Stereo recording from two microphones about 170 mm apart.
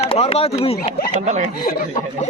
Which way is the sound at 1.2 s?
45° right (ahead or behind).